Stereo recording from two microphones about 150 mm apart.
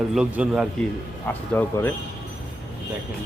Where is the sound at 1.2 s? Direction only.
15° left (ahead or behind).